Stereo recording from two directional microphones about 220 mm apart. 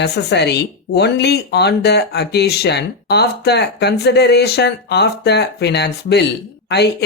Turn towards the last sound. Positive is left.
turn(degrees=50)  # may be behind; listen again after turning